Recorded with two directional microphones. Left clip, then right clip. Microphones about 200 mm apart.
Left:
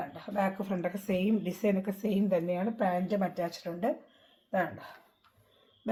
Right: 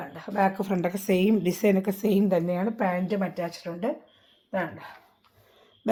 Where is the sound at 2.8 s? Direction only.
20° right (ahead or behind).